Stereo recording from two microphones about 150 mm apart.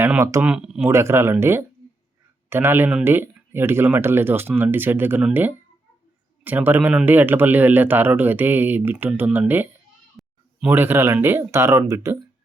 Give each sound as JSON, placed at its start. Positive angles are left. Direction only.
{"t": 0.2, "sound": "speech", "side_deg": -20}
{"t": 0.4, "sound": "speech", "side_deg": -5}
{"t": 0.9, "sound": "speech", "side_deg": -20}
{"t": 10.2, "sound": "a sound", "side_deg": 0}
{"t": 10.7, "sound": "speech", "side_deg": -15}